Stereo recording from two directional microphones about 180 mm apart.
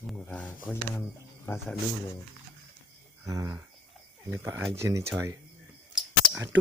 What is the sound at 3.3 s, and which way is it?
Cricket, 15° right (ahead or behind).